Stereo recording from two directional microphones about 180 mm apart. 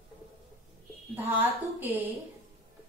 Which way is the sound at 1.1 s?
10° right (ahead or behind).